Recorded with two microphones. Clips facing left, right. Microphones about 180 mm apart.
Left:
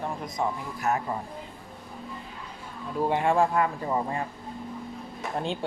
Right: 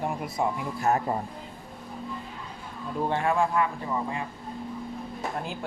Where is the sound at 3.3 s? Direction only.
35° left (ahead or behind).